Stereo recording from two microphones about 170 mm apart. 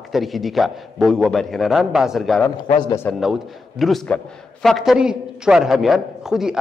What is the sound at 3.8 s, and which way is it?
A man's voice, centre (ahead or behind).